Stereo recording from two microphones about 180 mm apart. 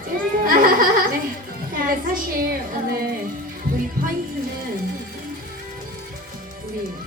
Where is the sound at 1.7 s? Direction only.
50° right (ahead or behind).